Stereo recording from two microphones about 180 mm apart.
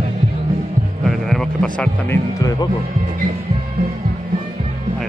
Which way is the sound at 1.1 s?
Centre (ahead or behind).